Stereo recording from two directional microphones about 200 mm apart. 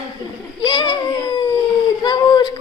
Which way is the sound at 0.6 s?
20° left (ahead or behind).